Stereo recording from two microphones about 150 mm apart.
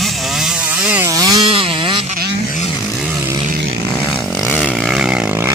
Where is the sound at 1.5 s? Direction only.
35° right (ahead or behind).